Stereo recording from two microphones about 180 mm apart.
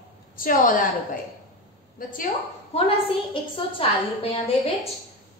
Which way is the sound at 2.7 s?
35° left (ahead or behind).